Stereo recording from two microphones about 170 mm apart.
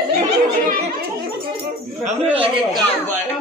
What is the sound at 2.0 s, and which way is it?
Speech, 35° right (ahead or behind).